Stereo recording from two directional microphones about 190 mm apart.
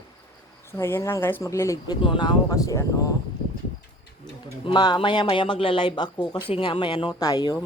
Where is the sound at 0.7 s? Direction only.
15° left (ahead or behind).